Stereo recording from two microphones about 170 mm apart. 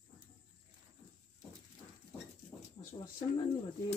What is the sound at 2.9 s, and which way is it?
Speech, 25° left (ahead or behind).